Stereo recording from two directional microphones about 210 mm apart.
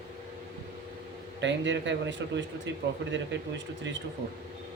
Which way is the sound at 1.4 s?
60° right (ahead or behind).